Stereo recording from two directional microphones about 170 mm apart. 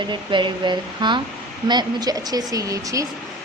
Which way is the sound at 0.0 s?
30° right (ahead or behind).